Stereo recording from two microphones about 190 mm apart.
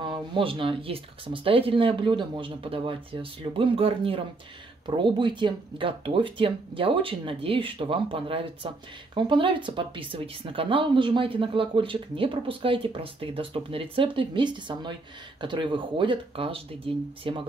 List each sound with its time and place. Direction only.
0.0 s speech: 25° right (ahead or behind)